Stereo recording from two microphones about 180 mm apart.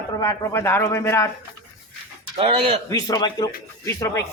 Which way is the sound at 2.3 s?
30° right (ahead or behind).